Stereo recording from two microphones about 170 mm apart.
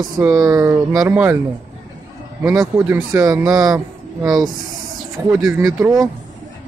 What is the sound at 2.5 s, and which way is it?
Speech, 20° right (ahead or behind).